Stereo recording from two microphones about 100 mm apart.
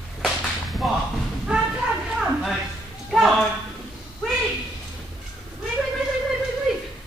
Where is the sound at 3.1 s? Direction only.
Centre (ahead or behind).